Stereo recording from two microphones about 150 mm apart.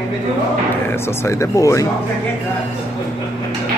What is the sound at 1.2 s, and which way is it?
Speech, 20° left (ahead or behind).